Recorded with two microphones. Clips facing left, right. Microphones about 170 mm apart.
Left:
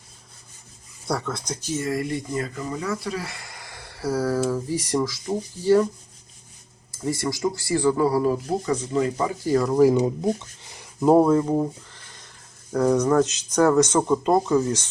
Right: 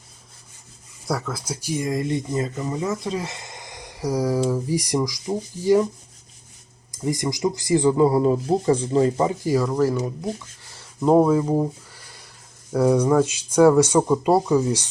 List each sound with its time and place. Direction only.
1.0 s speech: 5° right (ahead or behind)
6.9 s speech: 15° right (ahead or behind)
9.4 s speech: 10° right (ahead or behind)
9.6 s speech: 10° left (ahead or behind)
11.0 s speech: centre (ahead or behind)